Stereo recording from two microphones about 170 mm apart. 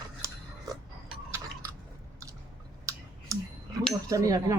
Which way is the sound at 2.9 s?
20° right (ahead or behind).